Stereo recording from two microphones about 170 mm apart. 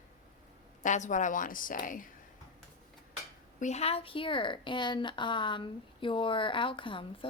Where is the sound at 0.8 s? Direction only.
45° left (ahead or behind).